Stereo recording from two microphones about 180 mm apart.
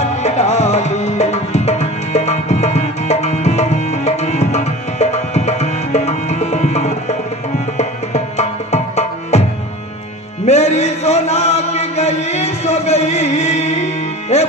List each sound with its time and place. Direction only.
0.2 s music: 40° left (ahead or behind)
10.4 s chant: 40° left (ahead or behind)
14.3 s music: 35° left (ahead or behind)